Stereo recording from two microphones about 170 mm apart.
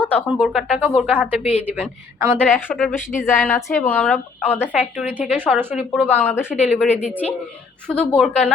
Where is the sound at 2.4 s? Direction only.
10° left (ahead or behind).